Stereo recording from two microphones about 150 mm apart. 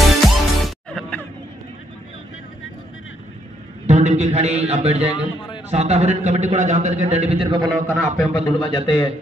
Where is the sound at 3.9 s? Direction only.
50° right (ahead or behind).